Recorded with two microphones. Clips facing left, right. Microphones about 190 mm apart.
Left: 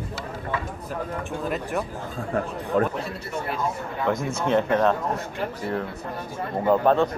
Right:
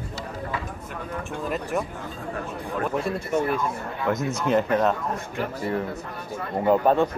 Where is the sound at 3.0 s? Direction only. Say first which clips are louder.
Right 6 dB; 50° right (ahead or behind).